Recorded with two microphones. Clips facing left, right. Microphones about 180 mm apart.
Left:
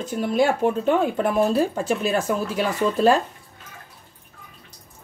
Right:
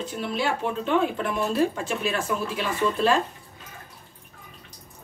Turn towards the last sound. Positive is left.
turn(degrees=40)  # may be behind; listen again after turning